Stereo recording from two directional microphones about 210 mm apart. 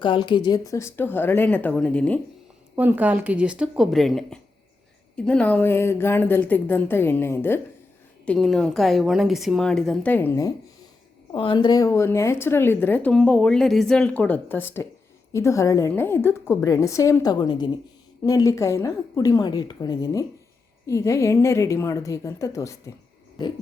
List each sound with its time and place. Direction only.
0.0 s a woman's voice: 20° left (ahead or behind); by 2.2 s 5° left (ahead or behind)
2.7 s a woman's voice: 10° right (ahead or behind); by 10.5 s 10° left (ahead or behind)
11.3 s a woman's voice: 25° left (ahead or behind)